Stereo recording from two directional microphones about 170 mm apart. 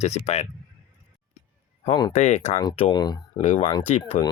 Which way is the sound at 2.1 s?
45° left (ahead or behind).